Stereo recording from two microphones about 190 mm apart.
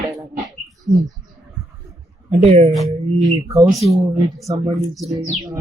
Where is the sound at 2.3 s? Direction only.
35° right (ahead or behind).